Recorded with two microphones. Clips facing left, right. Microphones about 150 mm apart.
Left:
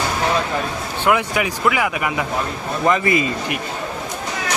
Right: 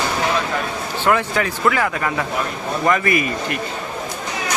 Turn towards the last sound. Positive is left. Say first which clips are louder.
# left 1 dB
turn(degrees=20)  # may be behind; listen again after turning